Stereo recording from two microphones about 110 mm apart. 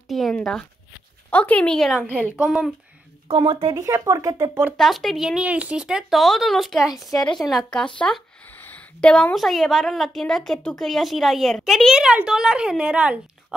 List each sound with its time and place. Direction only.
0.1 s speech: 5° left (ahead or behind)
2.2 s a woman's voice: 10° right (ahead or behind)
3.3 s speech: 50° right (ahead or behind)
3.7 s speech: 30° right (ahead or behind)
4.7 s speech: centre (ahead or behind)